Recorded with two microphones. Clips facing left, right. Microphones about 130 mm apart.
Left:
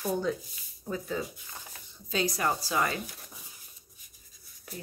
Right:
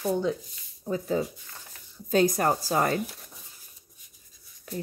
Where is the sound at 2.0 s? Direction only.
50° right (ahead or behind).